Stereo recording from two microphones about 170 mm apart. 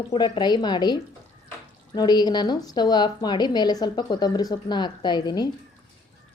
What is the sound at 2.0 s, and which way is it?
A woman's voice, 25° left (ahead or behind).